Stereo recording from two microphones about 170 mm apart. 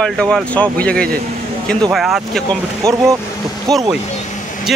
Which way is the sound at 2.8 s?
20° right (ahead or behind).